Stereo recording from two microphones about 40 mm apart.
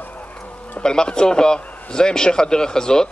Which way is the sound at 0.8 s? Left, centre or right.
Centre.